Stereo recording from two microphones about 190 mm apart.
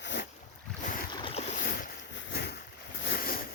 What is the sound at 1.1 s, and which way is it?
Boat, 30° left (ahead or behind).